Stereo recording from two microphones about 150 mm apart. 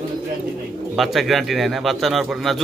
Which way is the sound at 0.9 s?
Centre (ahead or behind).